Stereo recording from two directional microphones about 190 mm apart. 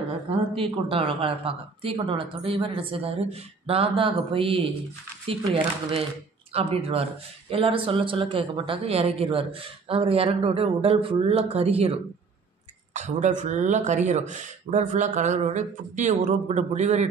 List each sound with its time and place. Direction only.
0.6 s speech: 30° right (ahead or behind)